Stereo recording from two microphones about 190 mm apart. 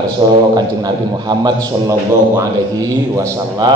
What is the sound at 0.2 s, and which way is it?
A man's voice, 25° right (ahead or behind).